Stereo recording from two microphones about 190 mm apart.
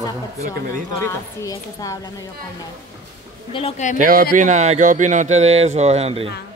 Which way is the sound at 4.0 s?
45° right (ahead or behind).